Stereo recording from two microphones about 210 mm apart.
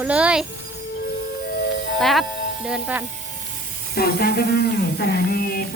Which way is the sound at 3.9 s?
45° left (ahead or behind).